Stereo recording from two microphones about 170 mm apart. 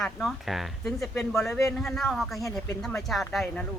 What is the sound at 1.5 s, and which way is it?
Speech, 15° left (ahead or behind).